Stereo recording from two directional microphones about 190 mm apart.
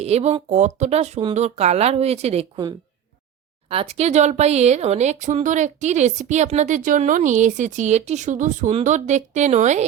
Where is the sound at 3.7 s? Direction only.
30° right (ahead or behind).